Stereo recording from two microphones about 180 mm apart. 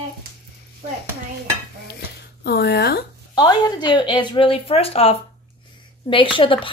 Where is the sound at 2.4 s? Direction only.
65° left (ahead or behind).